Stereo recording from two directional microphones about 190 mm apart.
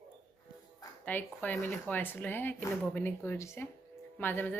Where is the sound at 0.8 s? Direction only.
10° left (ahead or behind).